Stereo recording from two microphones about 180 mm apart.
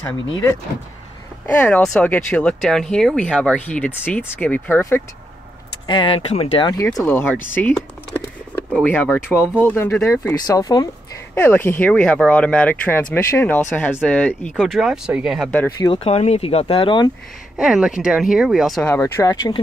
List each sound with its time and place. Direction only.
1.4 s speech: 10° left (ahead or behind)
5.9 s speech: 25° left (ahead or behind); by 15.5 s centre (ahead or behind)
15.5 s speech: 10° left (ahead or behind)
15.9 s speech: 35° left (ahead or behind)
17.6 s speech: 5° right (ahead or behind); by 19.6 s 25° left (ahead or behind)